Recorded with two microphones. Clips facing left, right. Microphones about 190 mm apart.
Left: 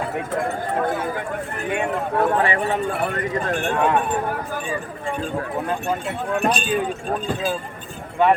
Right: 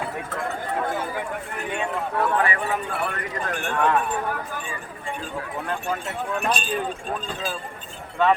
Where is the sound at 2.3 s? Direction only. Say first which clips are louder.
Left 3 dB; 30° left (ahead or behind).